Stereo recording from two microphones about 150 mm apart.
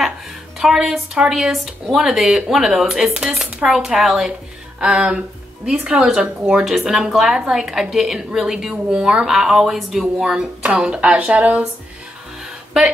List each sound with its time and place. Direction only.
0.6 s a woman's voice: 5° right (ahead or behind)
4.7 s a sound: 5° right (ahead or behind)
5.7 s a woman's voice: 5° right (ahead or behind)